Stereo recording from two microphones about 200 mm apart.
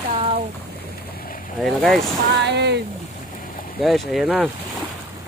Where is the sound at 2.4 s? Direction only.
60° right (ahead or behind).